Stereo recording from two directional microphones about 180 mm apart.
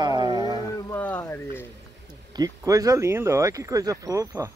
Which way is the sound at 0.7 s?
15° left (ahead or behind).